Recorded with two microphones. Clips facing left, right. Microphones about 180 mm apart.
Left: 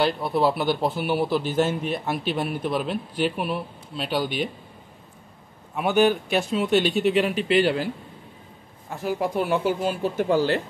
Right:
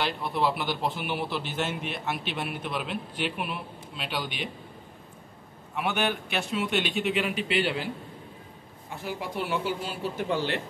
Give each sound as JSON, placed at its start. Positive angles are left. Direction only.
{"t": 0.0, "sound": "a man's voice", "side_deg": 35}
{"t": 5.8, "sound": "a man's voice", "side_deg": 40}
{"t": 9.0, "sound": "speech", "side_deg": 45}